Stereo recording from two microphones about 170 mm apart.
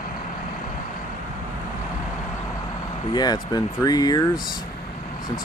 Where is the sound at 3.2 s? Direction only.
25° left (ahead or behind).